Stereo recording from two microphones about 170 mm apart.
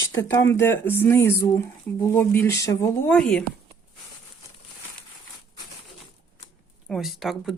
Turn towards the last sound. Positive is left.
turn(degrees=0)  # may be behind; listen again after turning